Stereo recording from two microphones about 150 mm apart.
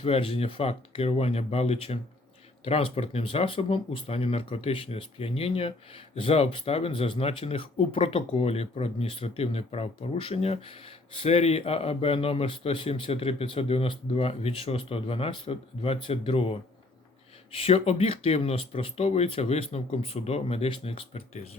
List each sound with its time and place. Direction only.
0.0 s speech: 35° left (ahead or behind)
17.6 s speech: 40° left (ahead or behind)